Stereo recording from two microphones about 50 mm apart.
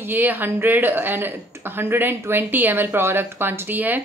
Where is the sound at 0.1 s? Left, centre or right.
Right.